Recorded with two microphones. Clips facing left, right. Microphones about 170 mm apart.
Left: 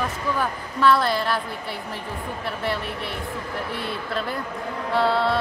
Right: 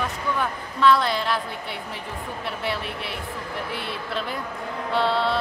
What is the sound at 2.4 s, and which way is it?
Speech, centre (ahead or behind).